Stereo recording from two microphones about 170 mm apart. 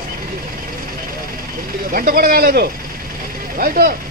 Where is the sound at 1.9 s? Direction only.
55° right (ahead or behind).